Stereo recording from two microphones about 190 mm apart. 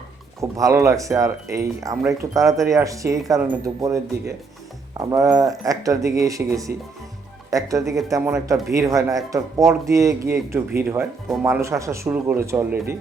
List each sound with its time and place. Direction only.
0.3 s speech: 15° right (ahead or behind)